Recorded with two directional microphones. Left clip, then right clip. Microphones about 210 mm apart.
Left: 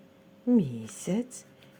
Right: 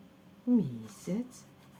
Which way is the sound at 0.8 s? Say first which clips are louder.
Left 6 dB; 30° left (ahead or behind).